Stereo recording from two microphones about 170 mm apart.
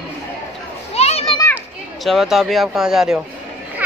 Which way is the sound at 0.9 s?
35° left (ahead or behind).